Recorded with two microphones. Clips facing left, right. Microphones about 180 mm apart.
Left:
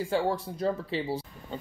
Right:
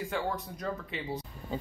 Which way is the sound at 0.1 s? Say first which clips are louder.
Left 6 dB; 30° left (ahead or behind).